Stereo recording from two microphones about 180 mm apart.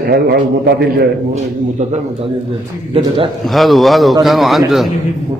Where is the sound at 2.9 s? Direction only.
30° right (ahead or behind).